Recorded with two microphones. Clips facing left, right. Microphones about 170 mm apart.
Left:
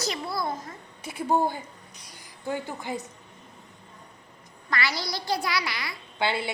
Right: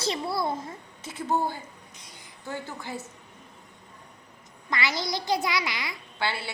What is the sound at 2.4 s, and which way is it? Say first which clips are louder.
Speech: left 4 dB; 15° left (ahead or behind).